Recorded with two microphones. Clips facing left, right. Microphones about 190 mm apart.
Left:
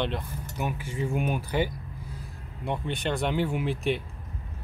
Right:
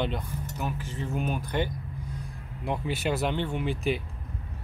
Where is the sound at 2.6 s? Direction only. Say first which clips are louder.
Right 1 dB; 5° right (ahead or behind).